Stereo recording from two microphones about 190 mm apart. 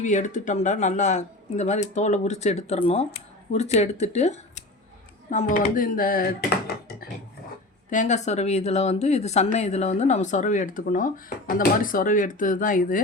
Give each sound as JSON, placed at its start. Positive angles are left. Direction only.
{"t": 0.0, "sound": "speech", "side_deg": 40}
{"t": 6.7, "sound": "a sound", "side_deg": 55}
{"t": 7.9, "sound": "speech", "side_deg": 40}